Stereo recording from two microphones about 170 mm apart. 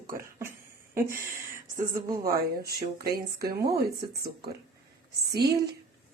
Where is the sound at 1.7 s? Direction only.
60° right (ahead or behind).